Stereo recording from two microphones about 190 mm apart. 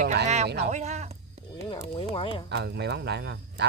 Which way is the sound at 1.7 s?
25° left (ahead or behind).